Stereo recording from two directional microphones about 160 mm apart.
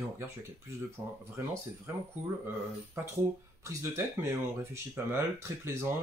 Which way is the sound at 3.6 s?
15° right (ahead or behind).